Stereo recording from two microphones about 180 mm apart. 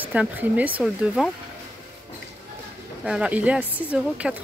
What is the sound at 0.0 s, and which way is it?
Speech, 10° right (ahead or behind).